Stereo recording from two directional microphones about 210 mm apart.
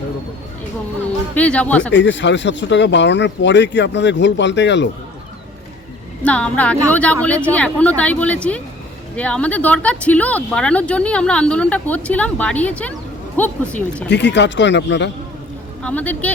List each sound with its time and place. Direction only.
1.4 s a woman's voice: 5° left (ahead or behind)
1.9 s speech: 60° left (ahead or behind)
6.2 s a woman's voice: 5° left (ahead or behind)
14.1 s speech: 55° left (ahead or behind)
15.8 s a woman's voice: 5° left (ahead or behind)